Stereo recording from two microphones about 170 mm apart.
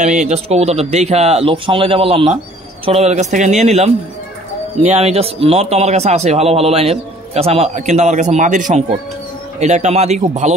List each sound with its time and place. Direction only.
0.0 s a man's voice: 45° right (ahead or behind)